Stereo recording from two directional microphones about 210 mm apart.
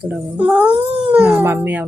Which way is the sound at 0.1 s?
5° right (ahead or behind).